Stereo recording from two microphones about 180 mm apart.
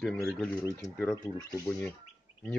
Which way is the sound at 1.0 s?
20° left (ahead or behind).